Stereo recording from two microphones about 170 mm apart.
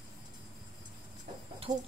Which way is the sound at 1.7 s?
25° right (ahead or behind).